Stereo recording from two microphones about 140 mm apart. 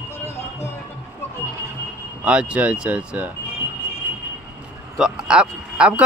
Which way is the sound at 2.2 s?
5° right (ahead or behind).